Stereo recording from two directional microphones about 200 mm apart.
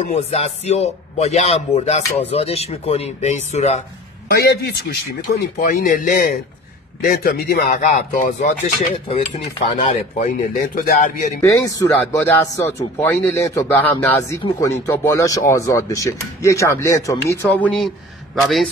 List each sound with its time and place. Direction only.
0.0 s a man's voice: 30° left (ahead or behind)
4.3 s speech: 50° left (ahead or behind)
5.2 s a man's voice: 40° left (ahead or behind)
11.4 s speech: 15° left (ahead or behind)
14.4 s speech: 20° left (ahead or behind); by 18.7 s centre (ahead or behind)